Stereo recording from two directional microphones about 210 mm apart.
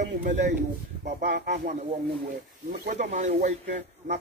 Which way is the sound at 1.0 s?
45° right (ahead or behind).